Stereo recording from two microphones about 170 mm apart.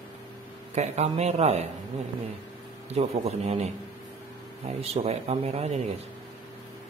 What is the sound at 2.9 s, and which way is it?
Speech, 40° right (ahead or behind).